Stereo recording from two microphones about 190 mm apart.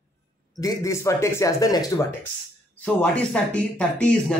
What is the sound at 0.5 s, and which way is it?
Speech, 15° left (ahead or behind).